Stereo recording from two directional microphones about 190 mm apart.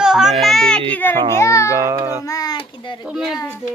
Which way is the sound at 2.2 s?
20° left (ahead or behind).